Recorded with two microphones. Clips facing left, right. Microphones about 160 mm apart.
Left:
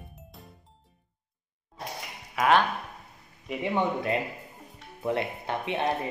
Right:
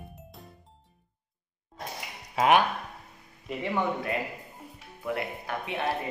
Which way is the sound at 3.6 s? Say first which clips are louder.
Left 2 dB; 20° left (ahead or behind).